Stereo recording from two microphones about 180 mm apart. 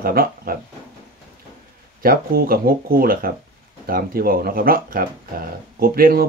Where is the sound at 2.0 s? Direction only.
55° right (ahead or behind).